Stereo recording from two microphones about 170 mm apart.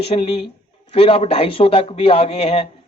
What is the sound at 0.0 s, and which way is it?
A man's voice, 35° left (ahead or behind).